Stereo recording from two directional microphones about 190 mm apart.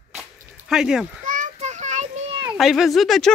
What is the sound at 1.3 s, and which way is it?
Child singing, 40° right (ahead or behind).